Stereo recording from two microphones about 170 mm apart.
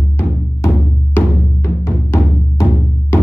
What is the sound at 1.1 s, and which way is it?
Music, 15° left (ahead or behind).